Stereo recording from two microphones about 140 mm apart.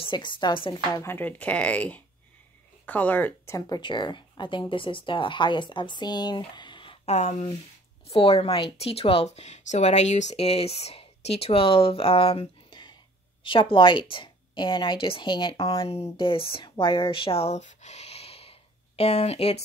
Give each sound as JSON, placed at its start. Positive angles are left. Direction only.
{"t": 0.0, "sound": "speech", "side_deg": 35}
{"t": 0.9, "sound": "speech", "side_deg": 15}
{"t": 3.5, "sound": "a woman's voice", "side_deg": 30}